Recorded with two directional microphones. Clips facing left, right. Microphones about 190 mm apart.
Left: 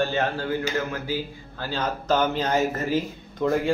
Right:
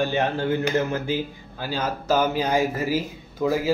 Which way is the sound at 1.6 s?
10° right (ahead or behind).